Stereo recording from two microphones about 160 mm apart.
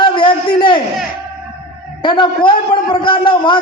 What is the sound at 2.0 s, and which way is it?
A man's voice, 30° left (ahead or behind).